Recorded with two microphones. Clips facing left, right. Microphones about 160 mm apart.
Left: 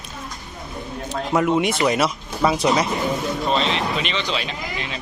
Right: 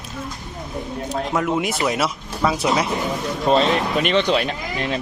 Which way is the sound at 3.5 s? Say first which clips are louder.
Right 6 dB; 45° right (ahead or behind).